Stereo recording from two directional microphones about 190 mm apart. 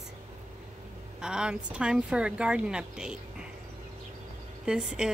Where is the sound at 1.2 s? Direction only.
5° right (ahead or behind).